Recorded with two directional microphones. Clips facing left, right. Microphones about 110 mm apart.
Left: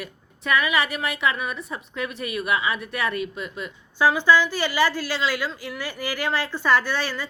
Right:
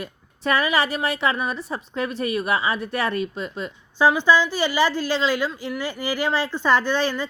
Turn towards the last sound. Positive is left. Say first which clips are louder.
# right 3 dB
turn(degrees=-25)  # may be behind; listen again after turning